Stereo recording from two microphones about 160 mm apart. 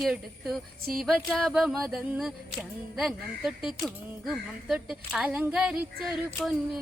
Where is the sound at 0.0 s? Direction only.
Centre (ahead or behind).